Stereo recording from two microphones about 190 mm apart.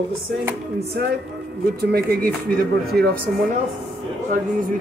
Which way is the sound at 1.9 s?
50° right (ahead or behind).